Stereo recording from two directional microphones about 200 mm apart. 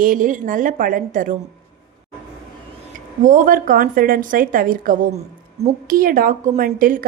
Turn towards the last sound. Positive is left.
turn(degrees=-45)  # may be behind; listen again after turning